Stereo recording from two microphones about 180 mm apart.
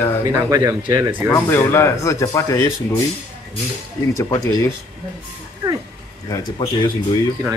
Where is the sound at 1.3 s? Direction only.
15° left (ahead or behind).